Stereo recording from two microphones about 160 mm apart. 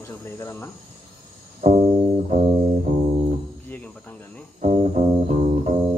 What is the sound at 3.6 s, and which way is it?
Cricket, 10° left (ahead or behind).